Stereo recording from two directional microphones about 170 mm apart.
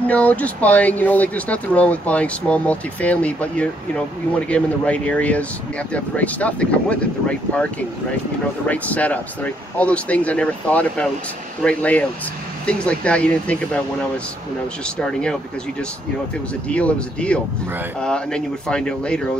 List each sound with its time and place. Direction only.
0.0 s speech: 10° left (ahead or behind)
15.0 s speech: 5° left (ahead or behind)
16.6 s speech: 5° left (ahead or behind)